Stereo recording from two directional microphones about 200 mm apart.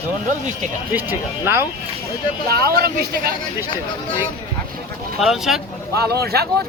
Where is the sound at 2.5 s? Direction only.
50° right (ahead or behind).